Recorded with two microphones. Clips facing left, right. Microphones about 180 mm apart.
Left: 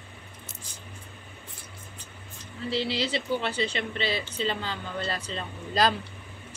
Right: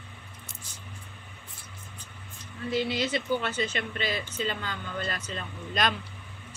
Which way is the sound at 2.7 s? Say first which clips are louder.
Even; 30° left (ahead or behind).